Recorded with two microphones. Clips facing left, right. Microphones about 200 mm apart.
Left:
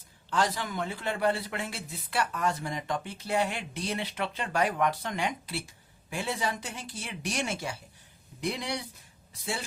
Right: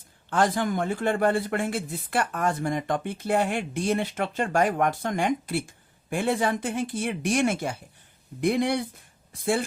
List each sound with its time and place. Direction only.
0.3 s speech: 50° right (ahead or behind)